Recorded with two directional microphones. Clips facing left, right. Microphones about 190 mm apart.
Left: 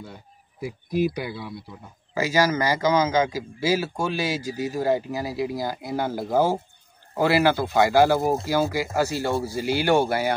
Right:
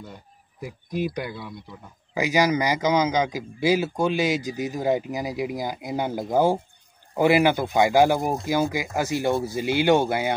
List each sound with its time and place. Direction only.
0.6 s speech: 10° left (ahead or behind)
2.1 s a man's voice: 15° right (ahead or behind)